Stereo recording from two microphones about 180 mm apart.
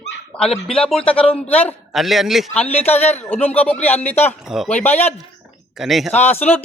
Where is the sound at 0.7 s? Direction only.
5° left (ahead or behind).